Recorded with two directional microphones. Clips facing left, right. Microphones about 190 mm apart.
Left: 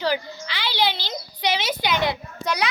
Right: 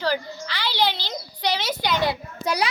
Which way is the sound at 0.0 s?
15° left (ahead or behind).